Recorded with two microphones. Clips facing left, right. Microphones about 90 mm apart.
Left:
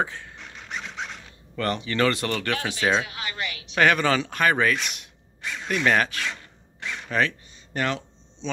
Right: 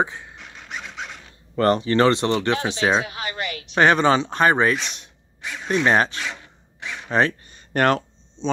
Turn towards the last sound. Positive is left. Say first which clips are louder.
# right 8 dB
turn(degrees=-55)  # may be behind; listen again after turning